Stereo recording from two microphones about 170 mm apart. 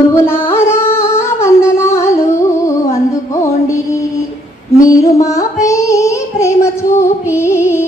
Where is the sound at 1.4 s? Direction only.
15° left (ahead or behind).